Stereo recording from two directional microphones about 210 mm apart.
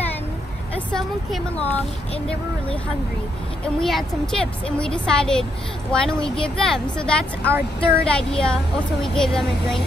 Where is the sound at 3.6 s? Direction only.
Centre (ahead or behind).